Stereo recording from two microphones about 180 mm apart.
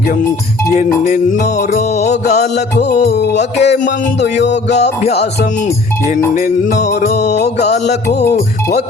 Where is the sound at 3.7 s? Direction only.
50° left (ahead or behind).